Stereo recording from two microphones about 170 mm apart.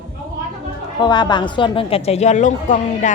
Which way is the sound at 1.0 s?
25° left (ahead or behind).